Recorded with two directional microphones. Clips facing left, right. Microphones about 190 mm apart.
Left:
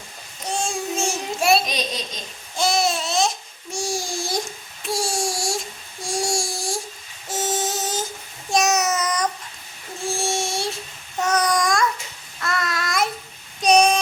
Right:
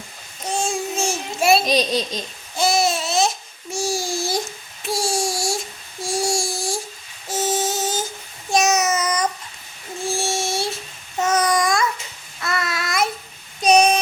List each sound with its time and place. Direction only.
0.4 s child singing: centre (ahead or behind)
1.6 s speech: 35° right (ahead or behind)
2.6 s babbling: centre (ahead or behind)
6.1 s a sound: centre (ahead or behind)
8.4 s child singing: centre (ahead or behind)
11.2 s babbling: 5° right (ahead or behind)
12.4 s child singing: 5° right (ahead or behind)
13.6 s a sound: centre (ahead or behind)